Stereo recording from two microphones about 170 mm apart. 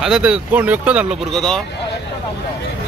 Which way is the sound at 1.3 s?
5° left (ahead or behind).